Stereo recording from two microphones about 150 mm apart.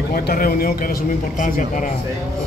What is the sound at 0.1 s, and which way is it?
A man's voice, 85° left.